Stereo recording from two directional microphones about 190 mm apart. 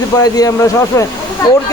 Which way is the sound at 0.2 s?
20° left (ahead or behind).